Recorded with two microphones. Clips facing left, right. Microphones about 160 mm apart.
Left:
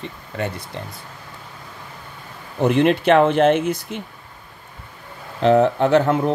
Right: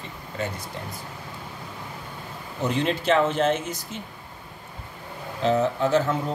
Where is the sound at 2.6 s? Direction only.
60° left (ahead or behind).